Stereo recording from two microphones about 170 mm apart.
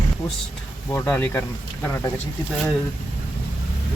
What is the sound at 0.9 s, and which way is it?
Speech, 15° left (ahead or behind).